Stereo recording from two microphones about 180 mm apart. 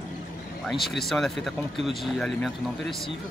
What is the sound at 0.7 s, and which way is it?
Speech, centre (ahead or behind).